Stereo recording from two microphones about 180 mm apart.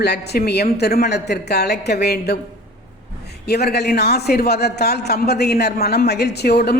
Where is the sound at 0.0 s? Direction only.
65° left (ahead or behind).